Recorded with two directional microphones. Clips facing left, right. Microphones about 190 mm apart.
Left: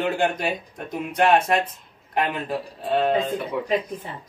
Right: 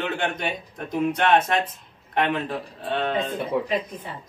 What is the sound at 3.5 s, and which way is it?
Speech, 30° right (ahead or behind).